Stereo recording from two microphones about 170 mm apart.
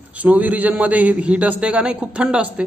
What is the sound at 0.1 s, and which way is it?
A man's voice, 10° right (ahead or behind).